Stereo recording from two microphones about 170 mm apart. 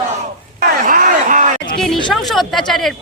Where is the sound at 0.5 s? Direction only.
55° right (ahead or behind).